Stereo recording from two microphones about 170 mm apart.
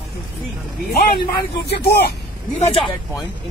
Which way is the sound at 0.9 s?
65° left (ahead or behind).